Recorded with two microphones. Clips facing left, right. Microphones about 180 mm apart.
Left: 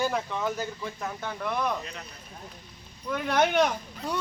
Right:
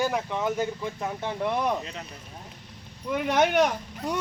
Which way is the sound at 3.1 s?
15° right (ahead or behind).